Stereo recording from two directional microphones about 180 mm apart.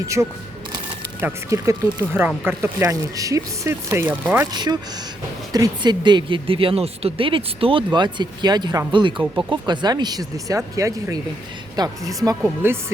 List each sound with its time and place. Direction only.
0.2 s speech: 10° right (ahead or behind)
4.5 s speech: 25° right (ahead or behind)